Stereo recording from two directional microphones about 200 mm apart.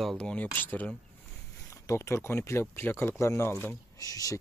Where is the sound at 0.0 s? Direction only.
5° left (ahead or behind).